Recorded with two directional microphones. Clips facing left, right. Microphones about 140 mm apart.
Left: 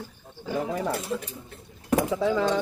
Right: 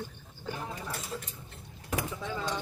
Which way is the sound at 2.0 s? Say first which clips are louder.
Left 11 dB; 85° left.